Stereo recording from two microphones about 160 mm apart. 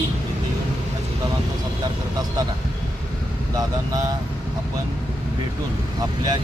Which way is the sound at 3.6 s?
25° right (ahead or behind).